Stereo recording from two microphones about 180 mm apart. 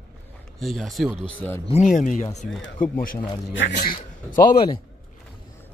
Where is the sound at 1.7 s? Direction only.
45° left (ahead or behind).